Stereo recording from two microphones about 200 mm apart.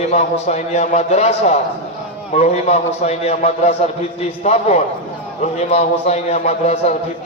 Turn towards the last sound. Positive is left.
turn(degrees=35)  # may be behind; listen again after turning